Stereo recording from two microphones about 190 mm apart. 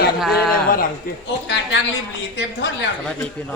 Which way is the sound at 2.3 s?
70° left (ahead or behind).